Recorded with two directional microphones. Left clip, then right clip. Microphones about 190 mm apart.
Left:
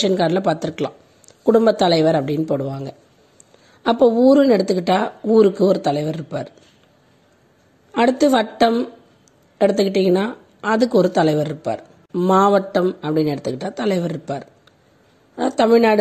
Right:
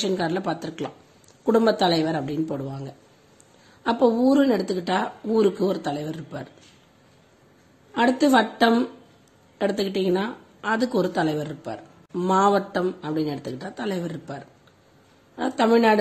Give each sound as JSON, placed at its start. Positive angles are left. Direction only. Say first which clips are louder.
{"t": 0.0, "sound": "a woman's voice", "louder": "left 8 dB", "side_deg": 35}
{"t": 7.9, "sound": "a woman's voice", "louder": "left 4 dB", "side_deg": 35}